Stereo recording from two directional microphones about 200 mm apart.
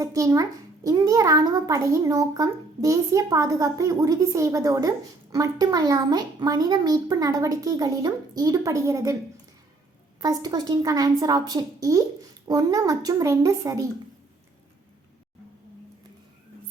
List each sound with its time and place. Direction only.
0.0 s a sound: 15° right (ahead or behind)
0.9 s a child's voice: 15° right (ahead or behind)
10.2 s a woman's voice: 20° right (ahead or behind)